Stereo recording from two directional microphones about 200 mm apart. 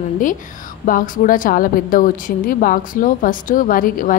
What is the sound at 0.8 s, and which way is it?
A woman's voice, 40° left (ahead or behind).